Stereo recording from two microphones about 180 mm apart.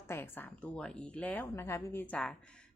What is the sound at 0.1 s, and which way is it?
A woman's voice, 10° left (ahead or behind).